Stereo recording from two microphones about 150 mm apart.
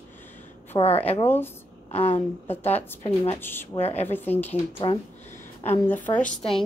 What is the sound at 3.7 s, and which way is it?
Speech, 45° left (ahead or behind).